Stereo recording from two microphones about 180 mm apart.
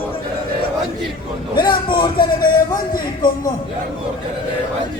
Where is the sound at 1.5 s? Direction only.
25° left (ahead or behind).